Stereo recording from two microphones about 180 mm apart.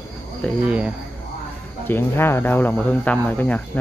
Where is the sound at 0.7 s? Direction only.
5° right (ahead or behind).